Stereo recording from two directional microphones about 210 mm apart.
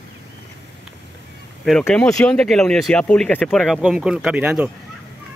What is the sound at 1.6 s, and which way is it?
A man's voice, 5° left (ahead or behind).